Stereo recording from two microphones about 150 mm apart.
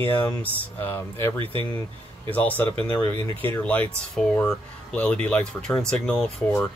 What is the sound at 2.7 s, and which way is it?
Speech, 35° right (ahead or behind).